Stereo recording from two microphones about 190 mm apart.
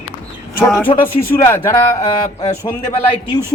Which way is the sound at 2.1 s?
30° left (ahead or behind).